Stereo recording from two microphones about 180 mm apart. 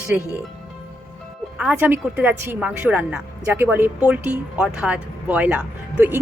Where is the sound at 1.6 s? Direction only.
10° right (ahead or behind).